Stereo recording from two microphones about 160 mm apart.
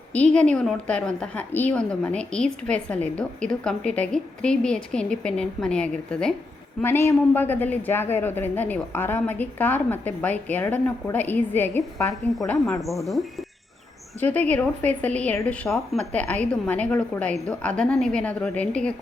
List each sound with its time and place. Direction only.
0.1 s a woman's voice: 5° left (ahead or behind)
6.8 s speech: 15° left (ahead or behind)
12.8 s a woman's voice: centre (ahead or behind)